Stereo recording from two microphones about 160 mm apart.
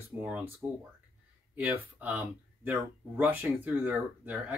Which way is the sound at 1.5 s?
10° right (ahead or behind).